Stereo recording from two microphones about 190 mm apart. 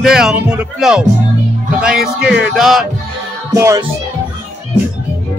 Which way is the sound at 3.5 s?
15° right (ahead or behind).